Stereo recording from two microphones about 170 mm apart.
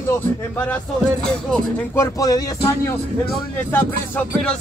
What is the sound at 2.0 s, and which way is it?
Speech, 20° left (ahead or behind).